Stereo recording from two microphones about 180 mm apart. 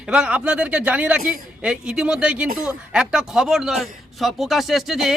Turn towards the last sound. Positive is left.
turn(degrees=0)  # may be behind; listen again after turning